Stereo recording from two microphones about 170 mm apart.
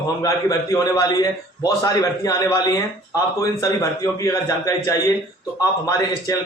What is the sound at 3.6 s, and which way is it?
A man's voice, 20° left (ahead or behind).